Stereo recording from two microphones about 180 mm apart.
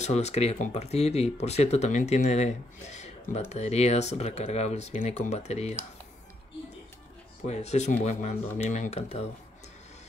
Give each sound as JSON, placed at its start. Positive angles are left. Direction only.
{"t": 0.0, "sound": "speech", "side_deg": 40}
{"t": 7.4, "sound": "speech", "side_deg": 40}